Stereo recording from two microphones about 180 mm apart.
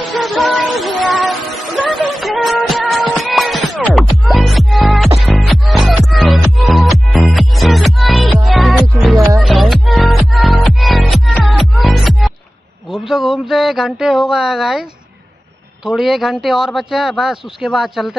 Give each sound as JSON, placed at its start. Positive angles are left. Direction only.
{"t": 0.0, "sound": "music", "side_deg": 0}
{"t": 9.1, "sound": "music", "side_deg": -20}
{"t": 9.4, "sound": "music", "side_deg": 0}
{"t": 12.9, "sound": "a sound", "side_deg": 0}
{"t": 15.8, "sound": "a man's voice", "side_deg": 0}